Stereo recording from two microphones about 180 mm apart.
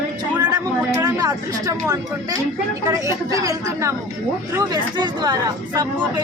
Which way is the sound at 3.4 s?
15° right (ahead or behind).